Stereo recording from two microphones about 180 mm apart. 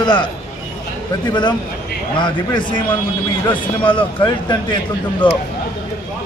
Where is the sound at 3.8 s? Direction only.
30° left (ahead or behind).